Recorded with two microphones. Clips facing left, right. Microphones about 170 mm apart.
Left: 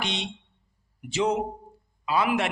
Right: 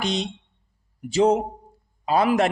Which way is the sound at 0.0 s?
40° right (ahead or behind).